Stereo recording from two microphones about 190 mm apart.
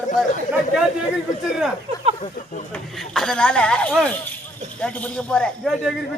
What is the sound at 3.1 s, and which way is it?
Speech, 5° left (ahead or behind).